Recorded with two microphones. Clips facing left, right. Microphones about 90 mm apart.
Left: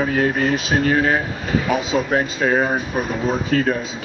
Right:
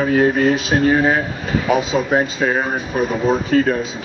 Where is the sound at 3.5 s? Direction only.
25° right (ahead or behind).